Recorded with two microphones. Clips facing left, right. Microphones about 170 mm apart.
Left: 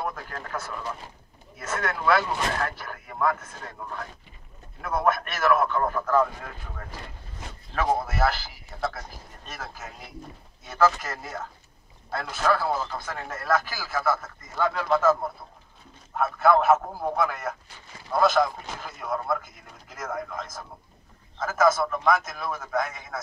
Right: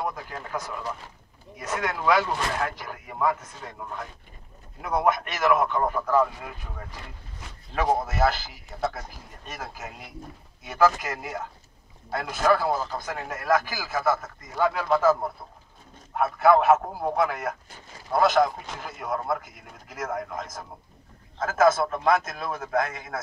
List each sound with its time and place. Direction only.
0.0 s a man's voice: 15° right (ahead or behind)
4.8 s a man's voice: 15° right (ahead or behind)
7.7 s a man's voice: 20° right (ahead or behind)
16.2 s a man's voice: 15° right (ahead or behind)
21.7 s a man's voice: 25° right (ahead or behind)